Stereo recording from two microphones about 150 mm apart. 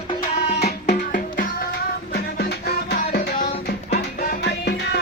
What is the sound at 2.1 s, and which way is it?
Music, 90° left.